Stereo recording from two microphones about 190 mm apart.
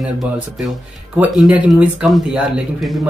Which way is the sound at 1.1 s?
5° right (ahead or behind).